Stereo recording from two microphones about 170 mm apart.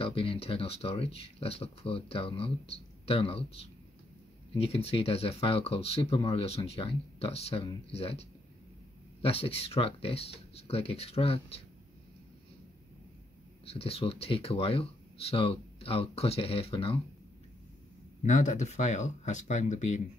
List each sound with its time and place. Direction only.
0.0 s speech: 35° left (ahead or behind)
13.7 s speech: 35° left (ahead or behind)
18.2 s speech: 45° left (ahead or behind)